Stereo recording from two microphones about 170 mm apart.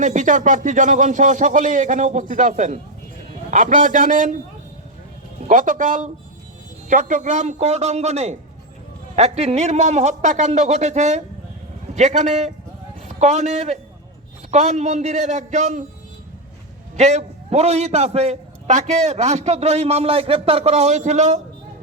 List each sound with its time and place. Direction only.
0.0 s speech: 50° right (ahead or behind)
5.5 s a man's voice: 50° right (ahead or behind)
17.0 s a man's voice: 40° right (ahead or behind)